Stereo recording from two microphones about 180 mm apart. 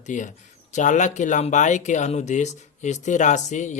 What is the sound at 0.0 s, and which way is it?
A man's voice, 45° left (ahead or behind).